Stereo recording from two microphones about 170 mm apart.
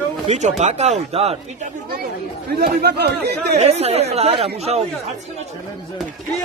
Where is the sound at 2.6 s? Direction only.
70° right (ahead or behind).